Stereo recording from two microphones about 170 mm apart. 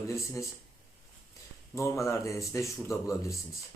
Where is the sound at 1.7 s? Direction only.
15° left (ahead or behind).